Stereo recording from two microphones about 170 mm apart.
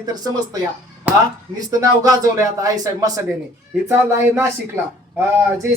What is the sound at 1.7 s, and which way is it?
A man's voice, 20° right (ahead or behind).